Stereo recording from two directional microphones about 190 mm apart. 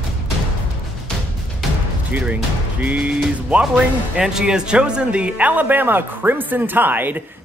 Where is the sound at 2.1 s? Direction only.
10° right (ahead or behind).